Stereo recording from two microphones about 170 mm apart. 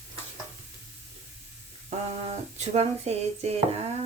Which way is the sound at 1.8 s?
40° right (ahead or behind).